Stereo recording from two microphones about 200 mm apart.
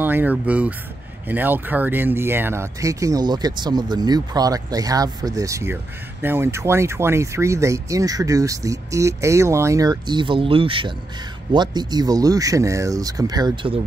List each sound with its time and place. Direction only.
0.0 s speech: 10° right (ahead or behind)